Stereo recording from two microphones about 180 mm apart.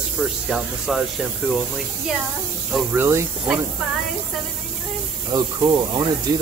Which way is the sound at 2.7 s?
10° right (ahead or behind).